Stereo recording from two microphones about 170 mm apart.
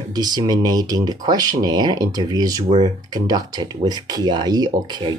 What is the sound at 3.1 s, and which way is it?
Speech, 25° right (ahead or behind).